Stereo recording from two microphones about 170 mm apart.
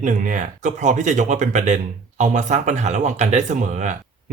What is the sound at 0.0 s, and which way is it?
Speech, 50° right (ahead or behind).